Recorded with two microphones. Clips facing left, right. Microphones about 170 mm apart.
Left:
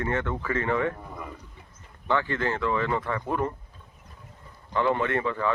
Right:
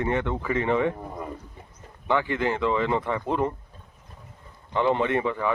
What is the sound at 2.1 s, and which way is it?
Speech, 15° right (ahead or behind).